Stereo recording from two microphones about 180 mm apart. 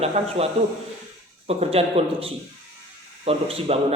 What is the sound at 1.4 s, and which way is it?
A woman's voice, 35° right (ahead or behind).